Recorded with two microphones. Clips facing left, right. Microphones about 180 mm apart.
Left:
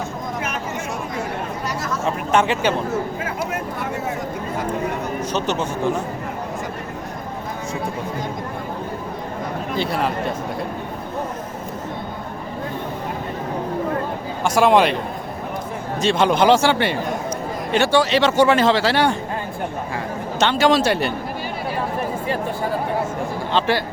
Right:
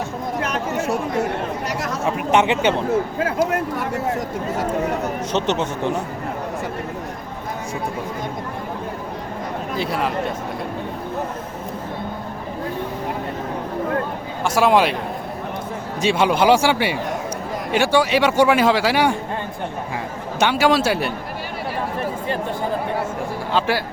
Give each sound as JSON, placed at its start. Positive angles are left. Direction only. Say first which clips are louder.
{"t": 0.4, "sound": "chatter", "louder": "right 4 dB", "side_deg": -40}
{"t": 2.0, "sound": "speech", "louder": "right 1 dB", "side_deg": -20}
{"t": 5.3, "sound": "speech", "louder": "right 2 dB", "side_deg": -25}
{"t": 9.7, "sound": "a man's voice", "louder": "even", "side_deg": 0}
{"t": 14.4, "sound": "a man's voice", "louder": "left 1 dB", "side_deg": 0}
{"t": 16.0, "sound": "a man's voice", "louder": "left 1 dB", "side_deg": -10}
{"t": 20.4, "sound": "a man's voice", "louder": "even", "side_deg": -10}
{"t": 23.6, "sound": "speech", "louder": "left 1 dB", "side_deg": -5}